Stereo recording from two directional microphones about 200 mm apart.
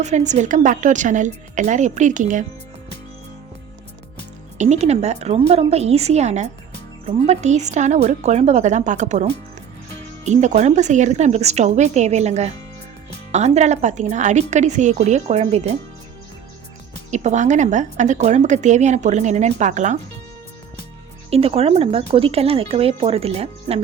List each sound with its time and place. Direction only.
0.0 s speech: 35° right (ahead or behind)
4.5 s speech: 35° right (ahead or behind)
17.1 s speech: 35° right (ahead or behind)
21.2 s speech: 30° right (ahead or behind)